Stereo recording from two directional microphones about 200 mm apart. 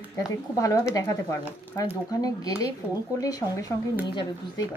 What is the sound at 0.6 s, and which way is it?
Speech, 15° left (ahead or behind).